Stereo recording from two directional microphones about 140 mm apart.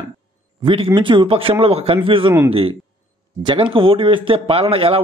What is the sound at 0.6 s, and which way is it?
A man's voice, 40° right (ahead or behind).